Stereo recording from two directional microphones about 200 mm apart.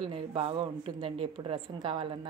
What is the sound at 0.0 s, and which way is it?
A woman's voice, 25° right (ahead or behind).